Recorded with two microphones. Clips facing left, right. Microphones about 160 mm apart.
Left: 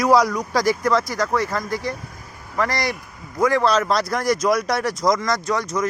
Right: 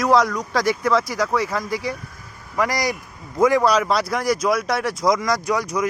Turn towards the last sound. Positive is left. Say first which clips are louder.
# right 1 dB
turn(degrees=-10)  # may be behind; listen again after turning